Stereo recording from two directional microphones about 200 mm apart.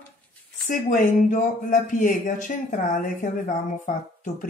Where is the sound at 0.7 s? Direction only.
40° left (ahead or behind).